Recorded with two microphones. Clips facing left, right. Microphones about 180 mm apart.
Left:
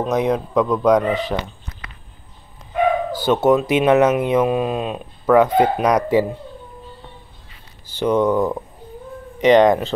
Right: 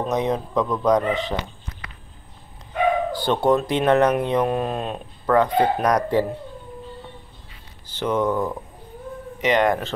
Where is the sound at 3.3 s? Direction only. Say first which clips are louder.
Left 5 dB; 5° left (ahead or behind).